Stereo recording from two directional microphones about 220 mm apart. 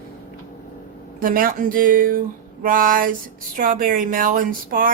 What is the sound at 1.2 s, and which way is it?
Speech, 40° right (ahead or behind).